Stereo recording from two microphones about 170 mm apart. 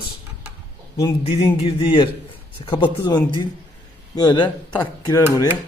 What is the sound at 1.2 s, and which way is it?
Speech, 35° left (ahead or behind).